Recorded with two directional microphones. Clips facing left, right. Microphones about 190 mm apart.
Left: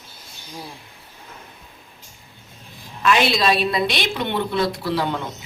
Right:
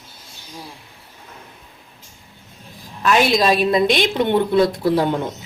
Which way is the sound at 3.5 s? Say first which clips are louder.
Right 5 dB; 45° right (ahead or behind).